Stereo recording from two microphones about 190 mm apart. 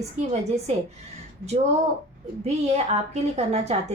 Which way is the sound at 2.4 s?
35° right (ahead or behind).